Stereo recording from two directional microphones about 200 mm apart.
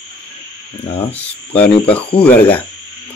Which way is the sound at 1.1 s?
5° left (ahead or behind).